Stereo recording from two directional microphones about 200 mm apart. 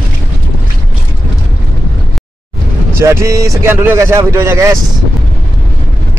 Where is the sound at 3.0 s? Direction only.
15° right (ahead or behind).